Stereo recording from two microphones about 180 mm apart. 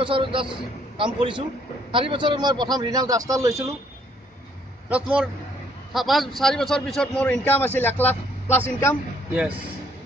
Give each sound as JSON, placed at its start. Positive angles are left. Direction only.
{"t": 0.0, "sound": "a man's voice", "side_deg": -30}
{"t": 4.8, "sound": "a man's voice", "side_deg": -5}